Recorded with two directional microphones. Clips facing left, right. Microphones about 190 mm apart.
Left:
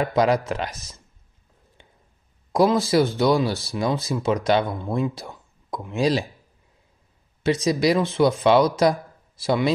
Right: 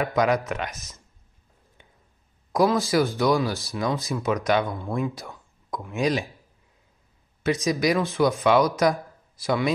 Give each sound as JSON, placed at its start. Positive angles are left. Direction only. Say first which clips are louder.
{"t": 0.0, "sound": "speech", "louder": "left 2 dB", "side_deg": 30}
{"t": 1.8, "sound": "a sound", "louder": "left 2 dB", "side_deg": 30}
{"t": 2.5, "sound": "speech", "louder": "left 2 dB", "side_deg": 25}
{"t": 4.8, "sound": "speech", "louder": "left 3 dB", "side_deg": 20}
{"t": 5.1, "sound": "speech", "louder": "left 2 dB", "side_deg": 30}
{"t": 7.4, "sound": "speech", "louder": "left 3 dB", "side_deg": 30}